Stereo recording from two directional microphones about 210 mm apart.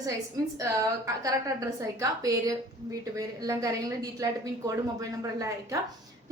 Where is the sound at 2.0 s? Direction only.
15° right (ahead or behind).